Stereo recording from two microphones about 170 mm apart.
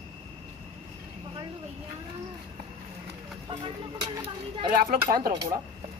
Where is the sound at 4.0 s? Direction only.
30° right (ahead or behind).